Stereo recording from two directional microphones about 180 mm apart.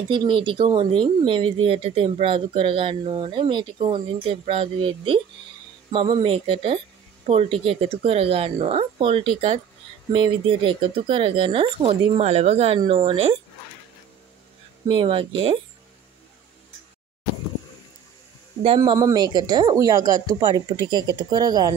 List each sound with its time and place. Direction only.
0.1 s speech: 25° right (ahead or behind)
14.9 s speech: 30° right (ahead or behind)
18.8 s speech: 20° right (ahead or behind)